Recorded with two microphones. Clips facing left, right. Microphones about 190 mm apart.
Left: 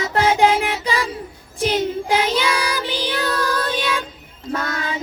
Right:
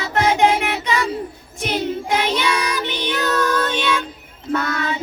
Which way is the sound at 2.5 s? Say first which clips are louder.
Even; 30° left (ahead or behind).